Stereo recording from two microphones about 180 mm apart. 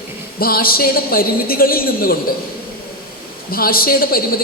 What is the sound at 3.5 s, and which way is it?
Speech, 55° left (ahead or behind).